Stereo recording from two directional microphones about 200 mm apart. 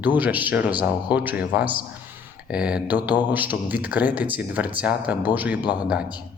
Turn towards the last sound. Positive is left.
turn(degrees=-5)  # may be behind; listen again after turning